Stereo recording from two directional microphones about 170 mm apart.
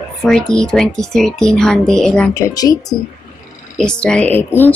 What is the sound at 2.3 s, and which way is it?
Speech, 20° left (ahead or behind).